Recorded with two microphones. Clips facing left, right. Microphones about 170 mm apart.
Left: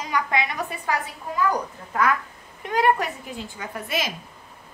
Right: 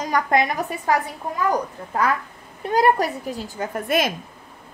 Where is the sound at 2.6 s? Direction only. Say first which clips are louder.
Right 3 dB; 35° right (ahead or behind).